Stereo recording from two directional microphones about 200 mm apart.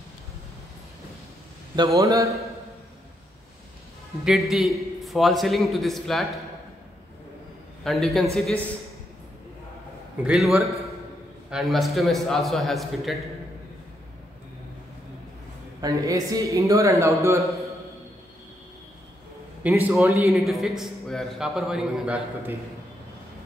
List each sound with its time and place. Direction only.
1.8 s speech: 20° right (ahead or behind)
4.2 s a man's voice: centre (ahead or behind)
7.8 s a man's voice: centre (ahead or behind)
10.2 s a man's voice: centre (ahead or behind)
15.8 s speech: 15° right (ahead or behind)
19.6 s speech: 10° right (ahead or behind)
20.2 s a man's voice: centre (ahead or behind)